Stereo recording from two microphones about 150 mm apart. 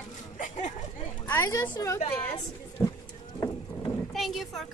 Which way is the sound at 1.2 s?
15° left (ahead or behind).